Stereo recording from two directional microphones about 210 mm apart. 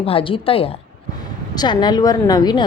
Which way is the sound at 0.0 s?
25° left (ahead or behind).